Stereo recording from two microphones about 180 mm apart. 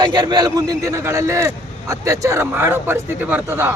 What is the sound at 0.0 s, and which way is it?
A man's voice, 25° right (ahead or behind).